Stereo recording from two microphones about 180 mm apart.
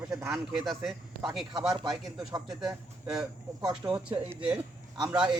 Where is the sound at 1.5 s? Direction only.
20° right (ahead or behind).